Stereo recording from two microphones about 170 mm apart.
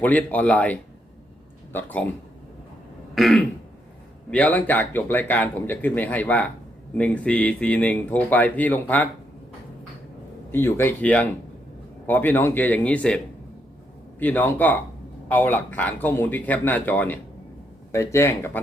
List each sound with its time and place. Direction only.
0.0 s speech: 10° left (ahead or behind)
3.2 s throat clearing: centre (ahead or behind)
4.3 s speech: 10° left (ahead or behind)
10.5 s speech: 15° left (ahead or behind)